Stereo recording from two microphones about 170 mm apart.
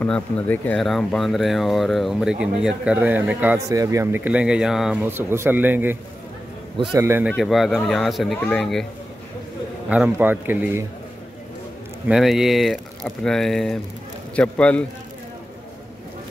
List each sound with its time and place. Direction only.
0.0 s speech: 10° left (ahead or behind); by 7.2 s 15° right (ahead or behind)
7.2 s speech: centre (ahead or behind)
9.8 s speech: 5° right (ahead or behind)
12.1 s a man's voice: centre (ahead or behind)